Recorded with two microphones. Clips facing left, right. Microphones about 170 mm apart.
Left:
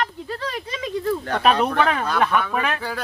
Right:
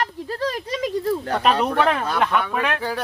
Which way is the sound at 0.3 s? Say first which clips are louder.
Right 4 dB; 40° right (ahead or behind).